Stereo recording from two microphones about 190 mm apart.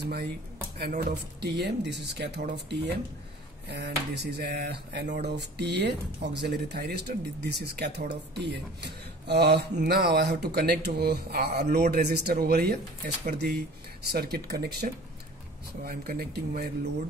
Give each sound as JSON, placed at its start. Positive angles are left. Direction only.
{"t": 0.7, "sound": "speech", "side_deg": -50}